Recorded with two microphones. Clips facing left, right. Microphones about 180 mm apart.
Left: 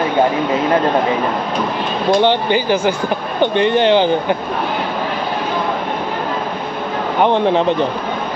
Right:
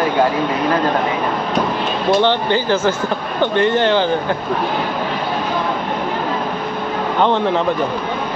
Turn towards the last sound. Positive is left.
turn(degrees=15)  # may be behind; listen again after turning